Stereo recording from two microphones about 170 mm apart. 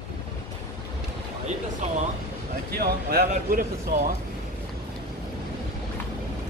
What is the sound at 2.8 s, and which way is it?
Speech, 65° right (ahead or behind).